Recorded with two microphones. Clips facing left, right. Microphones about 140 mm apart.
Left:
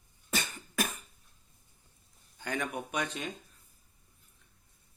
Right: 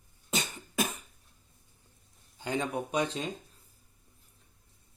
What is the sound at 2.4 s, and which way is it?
Speech, 25° right (ahead or behind).